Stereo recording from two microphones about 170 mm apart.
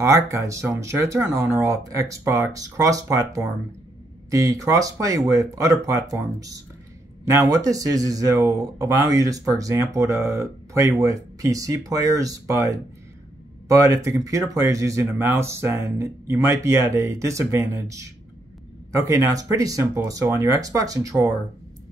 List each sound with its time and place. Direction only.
0.0 s speech: 15° right (ahead or behind)